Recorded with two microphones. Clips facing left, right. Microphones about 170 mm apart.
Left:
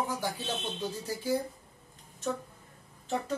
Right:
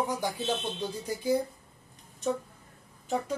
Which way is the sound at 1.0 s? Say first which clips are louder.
Right 6 dB; 15° right (ahead or behind).